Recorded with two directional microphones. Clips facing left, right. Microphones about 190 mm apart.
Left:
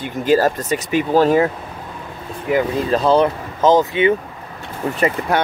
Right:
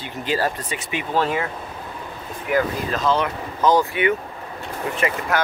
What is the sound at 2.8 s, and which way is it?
Speech, 30° left (ahead or behind).